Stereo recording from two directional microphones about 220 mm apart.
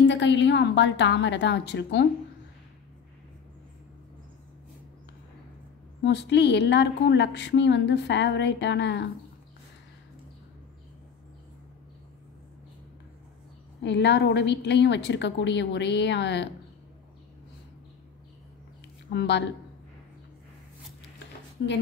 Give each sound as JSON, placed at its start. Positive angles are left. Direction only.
{"t": 0.0, "sound": "a woman's voice", "side_deg": 55}
{"t": 6.0, "sound": "a woman's voice", "side_deg": 55}
{"t": 13.8, "sound": "a woman's voice", "side_deg": 50}
{"t": 19.1, "sound": "a woman's voice", "side_deg": 50}
{"t": 21.6, "sound": "a woman's voice", "side_deg": 55}